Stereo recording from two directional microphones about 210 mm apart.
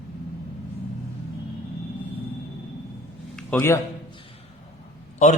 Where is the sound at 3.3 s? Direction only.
10° left (ahead or behind).